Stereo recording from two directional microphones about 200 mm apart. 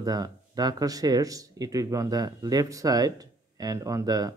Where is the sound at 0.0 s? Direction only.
20° right (ahead or behind).